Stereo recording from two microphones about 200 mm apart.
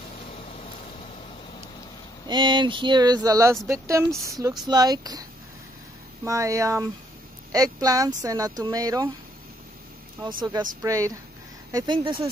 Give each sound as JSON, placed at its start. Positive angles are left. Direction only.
{"t": 2.2, "sound": "speech", "side_deg": -25}
{"t": 6.2, "sound": "speech", "side_deg": -15}
{"t": 10.4, "sound": "speech", "side_deg": -20}